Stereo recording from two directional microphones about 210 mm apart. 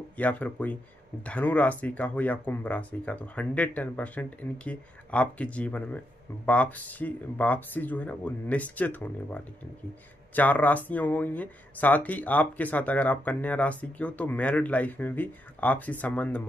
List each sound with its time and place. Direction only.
0.2 s speech: 10° left (ahead or behind)